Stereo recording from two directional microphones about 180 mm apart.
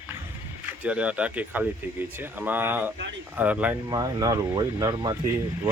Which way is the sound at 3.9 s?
20° right (ahead or behind).